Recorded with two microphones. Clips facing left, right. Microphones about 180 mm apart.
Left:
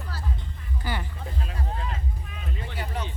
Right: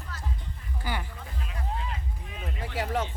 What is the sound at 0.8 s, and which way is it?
Music, 15° right (ahead or behind).